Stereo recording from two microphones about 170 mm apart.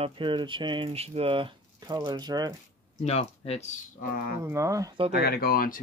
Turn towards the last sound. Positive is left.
turn(degrees=60)  # may be behind; listen again after turning